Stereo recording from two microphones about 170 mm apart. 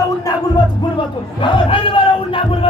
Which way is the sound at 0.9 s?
30° left (ahead or behind).